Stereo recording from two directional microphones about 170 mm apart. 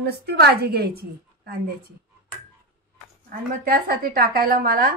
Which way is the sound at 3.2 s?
60° right (ahead or behind).